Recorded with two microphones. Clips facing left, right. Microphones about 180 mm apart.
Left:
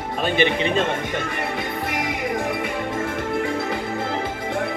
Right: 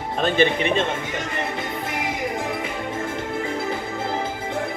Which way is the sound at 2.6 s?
65° left (ahead or behind).